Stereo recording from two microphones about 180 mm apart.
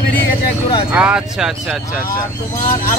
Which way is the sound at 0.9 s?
5° right (ahead or behind).